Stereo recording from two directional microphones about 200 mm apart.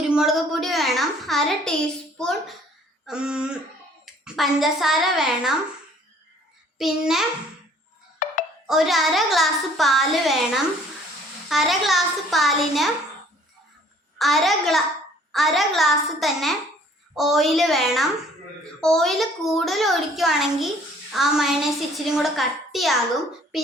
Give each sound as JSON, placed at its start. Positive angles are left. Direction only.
{"t": 0.1, "sound": "a sound", "side_deg": 0}
{"t": 2.1, "sound": "a child's voice", "side_deg": 0}
{"t": 6.7, "sound": "a woman's voice", "side_deg": 0}
{"t": 8.2, "sound": "music", "side_deg": 40}
{"t": 8.6, "sound": "a woman's voice", "side_deg": 0}
{"t": 14.2, "sound": "a woman's voice", "side_deg": 0}